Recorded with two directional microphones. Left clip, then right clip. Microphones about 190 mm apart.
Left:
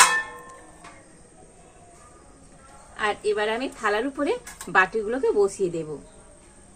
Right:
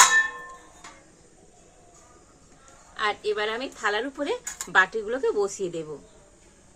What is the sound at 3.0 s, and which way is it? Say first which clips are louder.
A woman's voice: left 2 dB; 20° left (ahead or behind).